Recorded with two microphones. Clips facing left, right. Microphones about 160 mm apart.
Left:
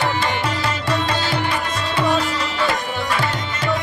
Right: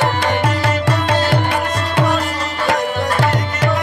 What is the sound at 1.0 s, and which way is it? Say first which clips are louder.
Music: right 5 dB; 70° right (ahead or behind).